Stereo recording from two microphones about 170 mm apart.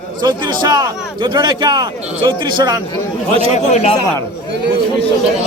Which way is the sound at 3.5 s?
40° left (ahead or behind).